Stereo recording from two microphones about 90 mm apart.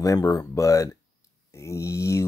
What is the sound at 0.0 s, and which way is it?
Speech, 35° left (ahead or behind).